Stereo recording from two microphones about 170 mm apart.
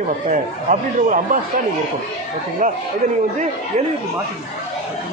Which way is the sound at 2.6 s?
50° right (ahead or behind).